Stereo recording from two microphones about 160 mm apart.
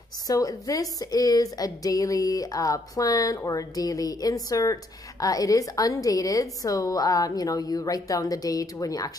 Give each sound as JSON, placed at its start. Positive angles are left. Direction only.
{"t": 0.3, "sound": "a woman's voice", "side_deg": 20}